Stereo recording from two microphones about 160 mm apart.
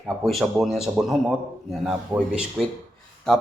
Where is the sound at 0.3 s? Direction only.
Centre (ahead or behind).